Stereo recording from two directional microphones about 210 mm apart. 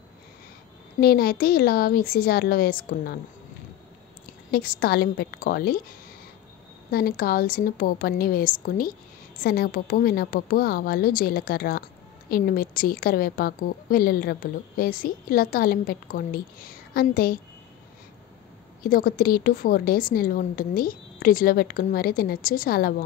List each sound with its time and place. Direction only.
1.0 s a woman's voice: 45° left (ahead or behind)
4.5 s a woman's voice: 45° left (ahead or behind)
6.9 s a woman's voice: 45° left (ahead or behind)
18.8 s a woman's voice: 45° left (ahead or behind)